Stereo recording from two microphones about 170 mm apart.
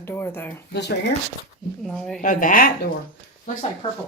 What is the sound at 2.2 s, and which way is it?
Speech, 50° left (ahead or behind).